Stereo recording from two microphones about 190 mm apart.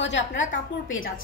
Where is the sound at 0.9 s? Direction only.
90° left.